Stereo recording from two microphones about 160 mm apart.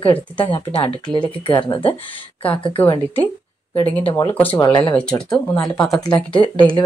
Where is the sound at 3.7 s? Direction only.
10° left (ahead or behind).